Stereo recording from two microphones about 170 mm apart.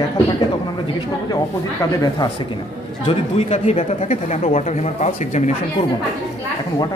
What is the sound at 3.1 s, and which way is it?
Speech, 40° left (ahead or behind).